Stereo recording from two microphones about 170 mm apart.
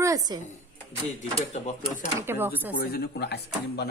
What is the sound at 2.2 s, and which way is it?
Speech, 10° right (ahead or behind).